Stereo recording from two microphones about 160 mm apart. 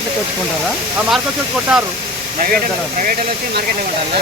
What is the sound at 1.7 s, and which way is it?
Speech, 5° right (ahead or behind).